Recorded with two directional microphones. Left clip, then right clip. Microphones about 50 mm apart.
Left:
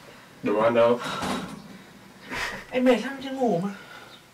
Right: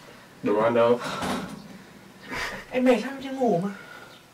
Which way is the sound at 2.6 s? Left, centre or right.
Centre.